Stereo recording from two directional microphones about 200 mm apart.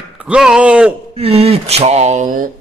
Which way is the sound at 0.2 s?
5° right (ahead or behind).